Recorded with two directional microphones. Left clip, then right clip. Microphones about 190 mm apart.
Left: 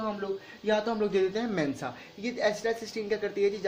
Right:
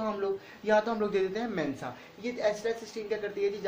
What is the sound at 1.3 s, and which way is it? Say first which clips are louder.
Speech: left 2 dB; 55° left (ahead or behind).